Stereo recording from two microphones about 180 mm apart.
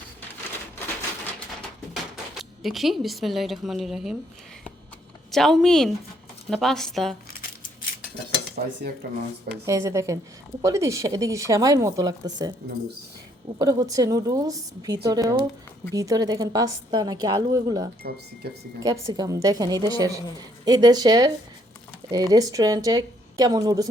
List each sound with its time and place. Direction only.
2.4 s speech: centre (ahead or behind)
5.3 s speech: centre (ahead or behind)
8.6 s cutlery: 50° right (ahead or behind)
9.0 s speech: 60° right (ahead or behind)
9.6 s a woman's voice: 15° right (ahead or behind)
13.6 s a woman's voice: 20° right (ahead or behind)
18.0 s cutlery: 55° right (ahead or behind)
18.4 s speech: 60° right (ahead or behind)
18.8 s a woman's voice: 20° right (ahead or behind)